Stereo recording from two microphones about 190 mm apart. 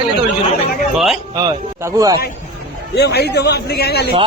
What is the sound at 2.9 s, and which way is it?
A man's voice, 60° left (ahead or behind).